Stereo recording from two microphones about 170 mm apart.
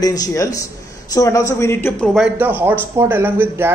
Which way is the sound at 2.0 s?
Centre (ahead or behind).